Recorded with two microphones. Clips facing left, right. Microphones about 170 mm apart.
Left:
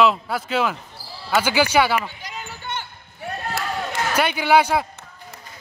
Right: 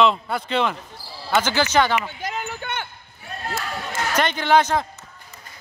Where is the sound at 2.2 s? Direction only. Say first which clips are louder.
Right 6 dB; 55° right (ahead or behind).